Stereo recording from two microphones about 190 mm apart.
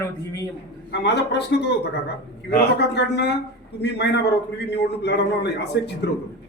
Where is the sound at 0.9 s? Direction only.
65° left (ahead or behind).